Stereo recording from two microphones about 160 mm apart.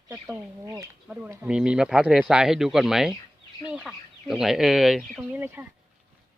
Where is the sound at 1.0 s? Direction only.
10° right (ahead or behind).